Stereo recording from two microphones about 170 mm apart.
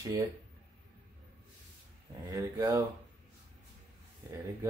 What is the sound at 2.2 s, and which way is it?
Speech, 20° right (ahead or behind).